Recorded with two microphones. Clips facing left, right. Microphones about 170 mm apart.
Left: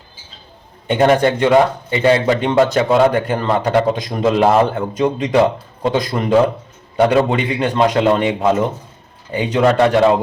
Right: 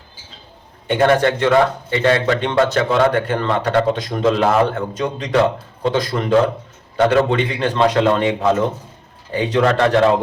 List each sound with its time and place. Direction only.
0.9 s a man's voice: 20° left (ahead or behind)